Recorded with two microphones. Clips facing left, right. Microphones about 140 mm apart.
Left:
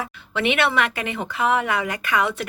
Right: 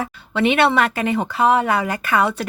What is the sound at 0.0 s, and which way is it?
Speech, 30° right (ahead or behind).